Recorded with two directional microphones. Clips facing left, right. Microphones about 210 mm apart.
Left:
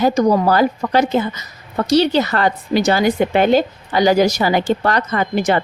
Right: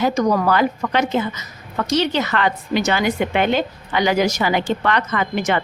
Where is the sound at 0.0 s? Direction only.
30° left (ahead or behind).